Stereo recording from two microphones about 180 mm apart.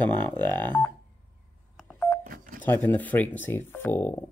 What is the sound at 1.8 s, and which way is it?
Telephone dialing, 10° left (ahead or behind).